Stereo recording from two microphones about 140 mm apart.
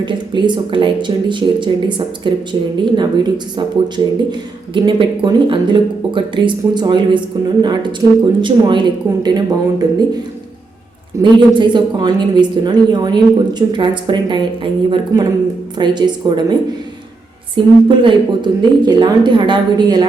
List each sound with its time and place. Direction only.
0.0 s speech: 35° right (ahead or behind)
11.2 s speech: 35° right (ahead or behind)
17.8 s speech: 35° right (ahead or behind)